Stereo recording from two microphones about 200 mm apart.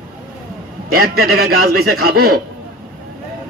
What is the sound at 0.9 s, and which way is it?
A man's voice, 50° right (ahead or behind).